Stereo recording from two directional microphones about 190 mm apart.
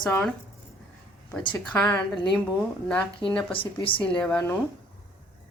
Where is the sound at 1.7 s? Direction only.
15° left (ahead or behind).